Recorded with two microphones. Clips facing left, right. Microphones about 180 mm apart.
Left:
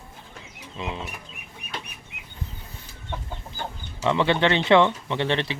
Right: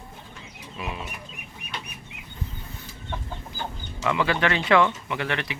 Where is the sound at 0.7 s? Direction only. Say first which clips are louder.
Left 2 dB; 25° left (ahead or behind).